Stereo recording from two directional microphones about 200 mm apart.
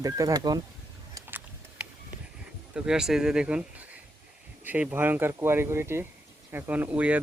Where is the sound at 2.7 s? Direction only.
5° right (ahead or behind).